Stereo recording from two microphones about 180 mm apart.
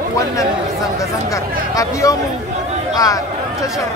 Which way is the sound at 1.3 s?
15° left (ahead or behind).